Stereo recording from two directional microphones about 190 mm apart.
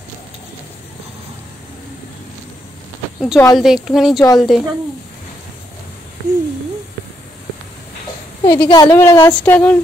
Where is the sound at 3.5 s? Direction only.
Centre (ahead or behind).